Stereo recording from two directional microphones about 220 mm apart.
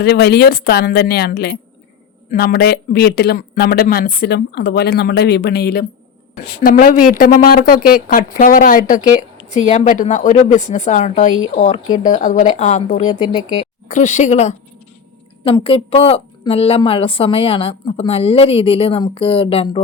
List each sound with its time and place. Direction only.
0.0 s a woman's voice: 50° left (ahead or behind); by 19.8 s 25° left (ahead or behind)